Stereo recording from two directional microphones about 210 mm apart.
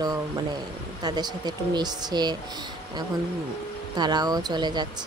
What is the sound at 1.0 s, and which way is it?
Speech, 20° right (ahead or behind).